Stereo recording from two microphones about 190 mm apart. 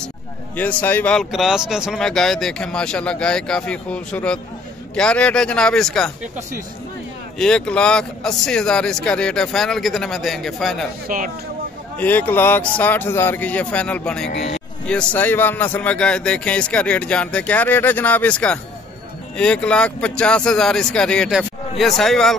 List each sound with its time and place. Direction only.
0.6 s speech: 10° left (ahead or behind)
7.3 s speech: 5° left (ahead or behind)
11.1 s speech: 45° right (ahead or behind)
12.0 s speech: 10° left (ahead or behind)